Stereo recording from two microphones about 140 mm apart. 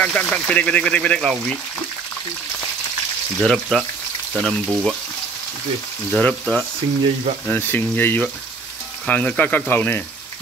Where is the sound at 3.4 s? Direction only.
5° left (ahead or behind).